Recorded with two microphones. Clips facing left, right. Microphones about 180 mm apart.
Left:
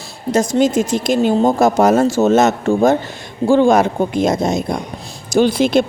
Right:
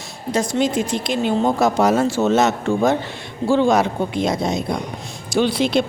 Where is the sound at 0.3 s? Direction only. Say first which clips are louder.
Left 5 dB; 45° left (ahead or behind).